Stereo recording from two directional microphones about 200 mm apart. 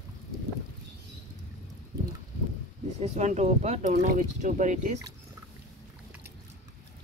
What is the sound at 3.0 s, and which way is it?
Speech, 35° right (ahead or behind).